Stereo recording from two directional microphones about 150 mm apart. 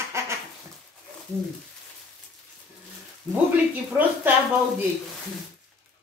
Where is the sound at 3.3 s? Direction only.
10° right (ahead or behind).